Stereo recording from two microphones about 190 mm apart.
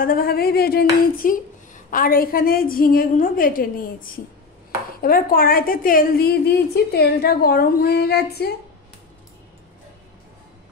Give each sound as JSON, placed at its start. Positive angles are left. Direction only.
{"t": 0.0, "sound": "a woman's voice", "side_deg": 50}